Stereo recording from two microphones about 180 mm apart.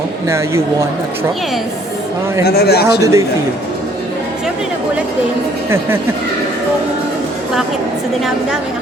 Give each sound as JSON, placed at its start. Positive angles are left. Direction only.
{"t": 0.3, "sound": "a man's voice", "side_deg": -15}
{"t": 2.4, "sound": "a man's voice", "side_deg": 60}
{"t": 2.8, "sound": "a man's voice", "side_deg": -15}